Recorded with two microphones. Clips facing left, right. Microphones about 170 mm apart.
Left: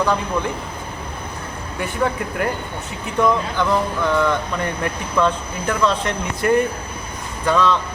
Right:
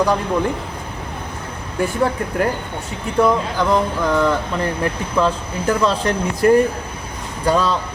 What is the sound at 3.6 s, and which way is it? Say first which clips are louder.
Speech: right 2 dB; 35° right (ahead or behind).